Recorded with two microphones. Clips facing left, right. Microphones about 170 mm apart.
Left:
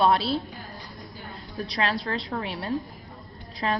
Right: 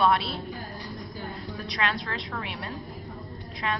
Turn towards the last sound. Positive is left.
turn(degrees=35)  # may be behind; listen again after turning